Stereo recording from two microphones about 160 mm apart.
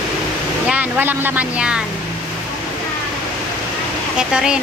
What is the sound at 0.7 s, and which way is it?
Speech, 10° right (ahead or behind).